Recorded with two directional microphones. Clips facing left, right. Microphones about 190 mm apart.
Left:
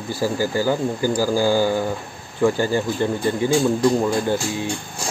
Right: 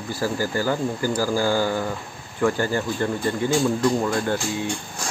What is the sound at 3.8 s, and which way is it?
Speech, 15° left (ahead or behind).